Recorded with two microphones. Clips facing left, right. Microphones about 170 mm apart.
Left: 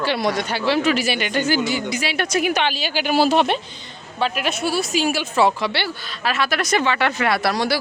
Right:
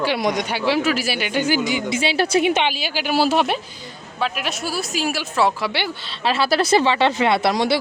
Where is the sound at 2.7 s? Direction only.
10° right (ahead or behind).